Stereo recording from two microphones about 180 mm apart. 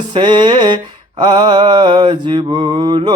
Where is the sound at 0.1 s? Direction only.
25° right (ahead or behind).